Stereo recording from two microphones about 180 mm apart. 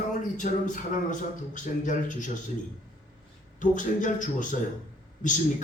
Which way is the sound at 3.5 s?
45° left (ahead or behind).